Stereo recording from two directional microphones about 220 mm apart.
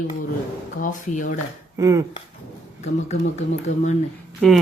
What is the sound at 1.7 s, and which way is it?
Speech, 15° right (ahead or behind).